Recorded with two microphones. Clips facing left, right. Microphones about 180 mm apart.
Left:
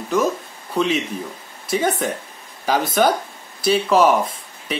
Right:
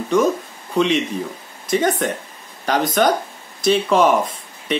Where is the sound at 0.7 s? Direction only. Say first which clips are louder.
Right 3 dB; 5° left (ahead or behind).